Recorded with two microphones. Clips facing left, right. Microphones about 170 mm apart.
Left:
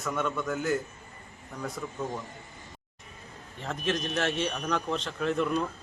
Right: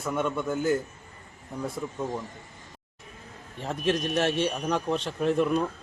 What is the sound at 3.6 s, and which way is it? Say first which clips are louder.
A man's voice: right 4 dB; 15° right (ahead or behind).